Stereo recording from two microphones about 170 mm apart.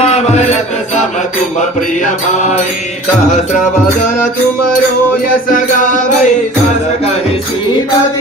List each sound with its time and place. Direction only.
2.3 s music: 45° left (ahead or behind)
5.5 s music: 50° left (ahead or behind)